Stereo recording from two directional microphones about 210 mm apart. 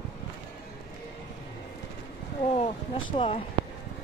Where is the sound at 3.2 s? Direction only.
25° left (ahead or behind).